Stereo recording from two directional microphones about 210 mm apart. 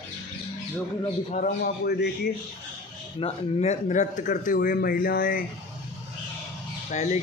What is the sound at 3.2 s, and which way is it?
Speech, 30° left (ahead or behind).